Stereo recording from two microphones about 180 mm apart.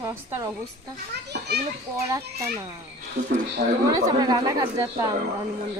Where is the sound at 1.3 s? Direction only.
65° right (ahead or behind).